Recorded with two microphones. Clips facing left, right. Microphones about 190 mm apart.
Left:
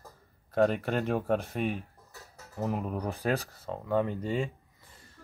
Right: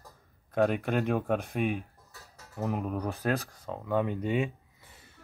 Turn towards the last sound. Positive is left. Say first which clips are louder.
# even
turn(degrees=-5)  # may be behind; listen again after turning